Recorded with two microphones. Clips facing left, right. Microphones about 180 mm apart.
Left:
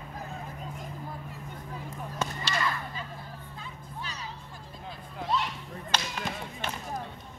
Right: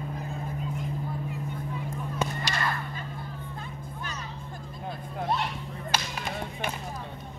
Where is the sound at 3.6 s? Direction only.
50° right (ahead or behind).